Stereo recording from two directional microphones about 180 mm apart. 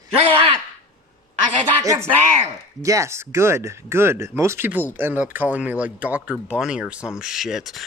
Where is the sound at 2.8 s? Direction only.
15° right (ahead or behind).